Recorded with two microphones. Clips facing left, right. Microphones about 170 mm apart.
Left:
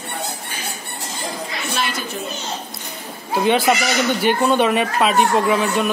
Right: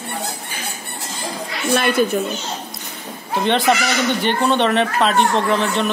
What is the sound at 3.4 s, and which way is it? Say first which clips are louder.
Speech: even; 5° left (ahead or behind).